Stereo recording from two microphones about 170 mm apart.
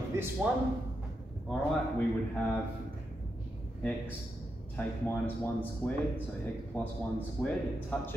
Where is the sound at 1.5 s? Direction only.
10° left (ahead or behind).